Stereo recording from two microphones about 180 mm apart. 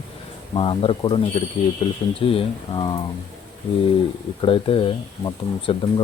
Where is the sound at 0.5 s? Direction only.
30° left (ahead or behind).